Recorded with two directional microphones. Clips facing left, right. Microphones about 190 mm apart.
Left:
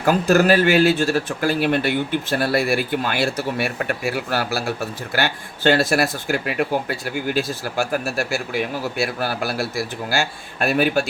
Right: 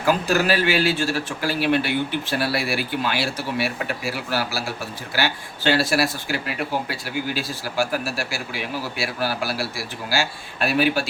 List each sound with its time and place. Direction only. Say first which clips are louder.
0.0 s speech: left 4 dB; 50° left (ahead or behind)